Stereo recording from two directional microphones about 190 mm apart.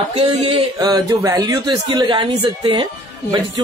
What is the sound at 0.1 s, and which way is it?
Speech, 30° right (ahead or behind).